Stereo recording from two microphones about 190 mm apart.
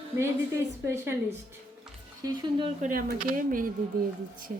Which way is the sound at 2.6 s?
40° right (ahead or behind).